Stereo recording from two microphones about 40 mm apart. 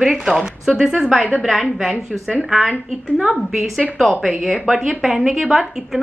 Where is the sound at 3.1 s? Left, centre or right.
Centre.